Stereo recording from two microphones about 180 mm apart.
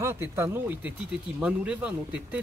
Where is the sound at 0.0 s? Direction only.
10° right (ahead or behind).